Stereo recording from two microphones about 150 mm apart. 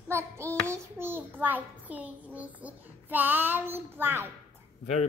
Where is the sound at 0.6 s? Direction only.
15° right (ahead or behind).